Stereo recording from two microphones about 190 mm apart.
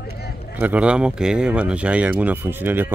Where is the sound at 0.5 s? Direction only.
10° right (ahead or behind).